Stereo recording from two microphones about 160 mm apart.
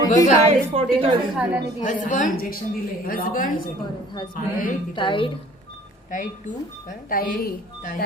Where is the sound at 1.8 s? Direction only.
50° left (ahead or behind).